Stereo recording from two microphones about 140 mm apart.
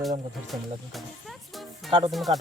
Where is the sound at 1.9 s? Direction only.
35° right (ahead or behind).